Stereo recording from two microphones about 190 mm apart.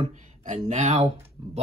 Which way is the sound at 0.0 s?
40° right (ahead or behind).